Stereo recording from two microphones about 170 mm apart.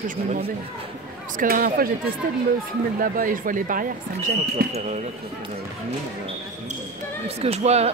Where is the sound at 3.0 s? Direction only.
55° right (ahead or behind).